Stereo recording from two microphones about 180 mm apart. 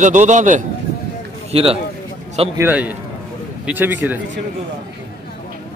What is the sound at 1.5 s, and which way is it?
Speech, 35° right (ahead or behind).